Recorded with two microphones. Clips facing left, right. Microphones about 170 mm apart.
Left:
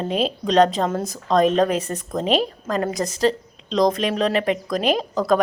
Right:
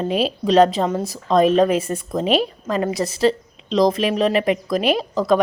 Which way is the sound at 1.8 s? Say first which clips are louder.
Right 3 dB; 40° left (ahead or behind).